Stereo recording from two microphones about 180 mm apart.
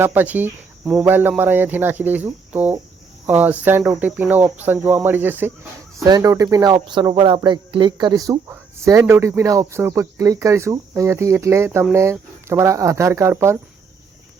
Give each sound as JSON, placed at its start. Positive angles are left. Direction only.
{"t": 0.0, "sound": "speech", "side_deg": -10}